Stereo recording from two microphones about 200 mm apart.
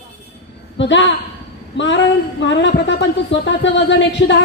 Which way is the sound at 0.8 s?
65° left (ahead or behind).